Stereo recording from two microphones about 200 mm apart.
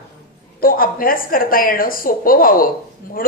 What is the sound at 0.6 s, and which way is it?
A woman's voice, 45° left (ahead or behind).